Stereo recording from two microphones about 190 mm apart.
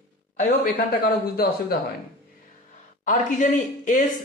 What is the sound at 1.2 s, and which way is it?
Speech, 55° left (ahead or behind).